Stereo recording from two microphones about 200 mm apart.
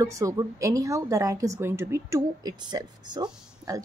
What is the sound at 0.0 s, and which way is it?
Speech, 15° right (ahead or behind).